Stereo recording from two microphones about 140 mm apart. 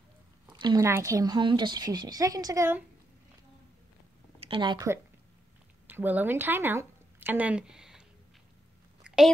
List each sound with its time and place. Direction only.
0.5 s speech: 30° right (ahead or behind)
4.4 s speech: 35° right (ahead or behind)
5.9 s speech: 15° right (ahead or behind)
9.0 s a sound: 5° right (ahead or behind)